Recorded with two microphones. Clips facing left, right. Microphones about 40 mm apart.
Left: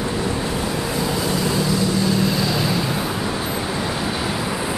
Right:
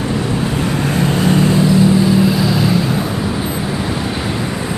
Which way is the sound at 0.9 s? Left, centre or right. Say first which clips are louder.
Right 9 dB; right.